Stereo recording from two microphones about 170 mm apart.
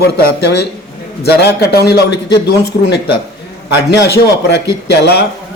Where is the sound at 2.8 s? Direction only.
90° left.